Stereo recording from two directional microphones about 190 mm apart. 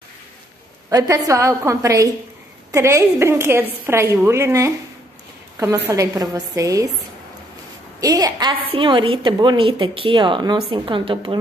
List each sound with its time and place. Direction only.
0.8 s a woman's voice: 15° right (ahead or behind)
5.9 s a woman's voice: 20° right (ahead or behind)
8.0 s a woman's voice: 20° right (ahead or behind)